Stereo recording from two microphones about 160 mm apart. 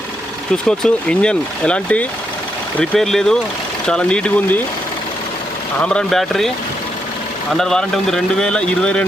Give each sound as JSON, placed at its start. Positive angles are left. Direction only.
{"t": 0.8, "sound": "a man's voice", "side_deg": 5}
{"t": 5.8, "sound": "a man's voice", "side_deg": 5}
{"t": 7.5, "sound": "a man's voice", "side_deg": 5}